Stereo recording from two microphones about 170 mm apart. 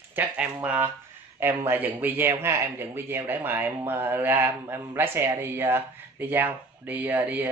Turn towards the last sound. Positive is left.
turn(degrees=-10)  # may be behind; listen again after turning